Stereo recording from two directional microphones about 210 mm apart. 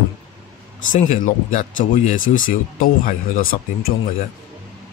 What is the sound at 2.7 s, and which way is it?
Speech, 40° left (ahead or behind).